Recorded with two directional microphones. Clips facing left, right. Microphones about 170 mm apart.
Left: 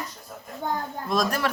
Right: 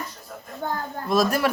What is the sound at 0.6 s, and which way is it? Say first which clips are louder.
Speech: even; 15° left (ahead or behind).